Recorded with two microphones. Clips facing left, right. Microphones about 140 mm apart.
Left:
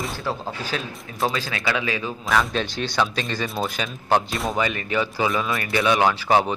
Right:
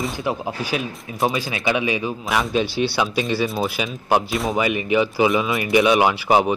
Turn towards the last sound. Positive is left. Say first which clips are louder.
# right 2 dB
turn(degrees=-10)  # may be behind; listen again after turning